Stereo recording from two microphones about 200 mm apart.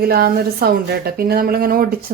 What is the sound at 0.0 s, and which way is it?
Speech, 50° right (ahead or behind).